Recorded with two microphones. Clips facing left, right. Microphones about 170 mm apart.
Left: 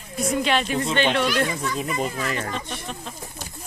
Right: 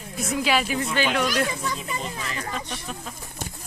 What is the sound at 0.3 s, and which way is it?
Speech, 5° right (ahead or behind).